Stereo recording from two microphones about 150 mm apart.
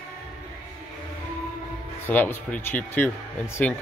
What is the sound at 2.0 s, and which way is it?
Speech, 15° left (ahead or behind).